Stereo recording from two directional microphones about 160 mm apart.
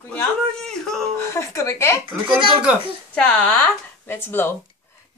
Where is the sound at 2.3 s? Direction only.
5° right (ahead or behind).